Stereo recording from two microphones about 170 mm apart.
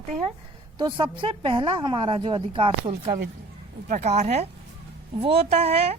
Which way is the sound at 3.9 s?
40° right (ahead or behind).